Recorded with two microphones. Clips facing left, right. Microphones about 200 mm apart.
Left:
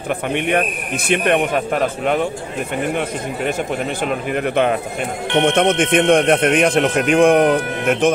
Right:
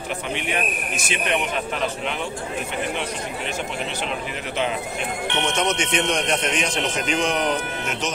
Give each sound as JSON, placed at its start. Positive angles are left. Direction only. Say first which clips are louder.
{"t": 0.3, "sound": "speech", "louder": "left 8 dB", "side_deg": 55}
{"t": 4.3, "sound": "speech", "louder": "left 12 dB", "side_deg": 55}